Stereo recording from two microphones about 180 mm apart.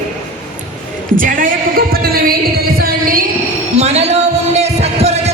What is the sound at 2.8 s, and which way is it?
Music, 55° right (ahead or behind).